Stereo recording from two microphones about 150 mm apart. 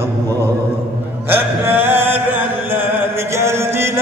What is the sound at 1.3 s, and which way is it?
Mantra, 15° right (ahead or behind).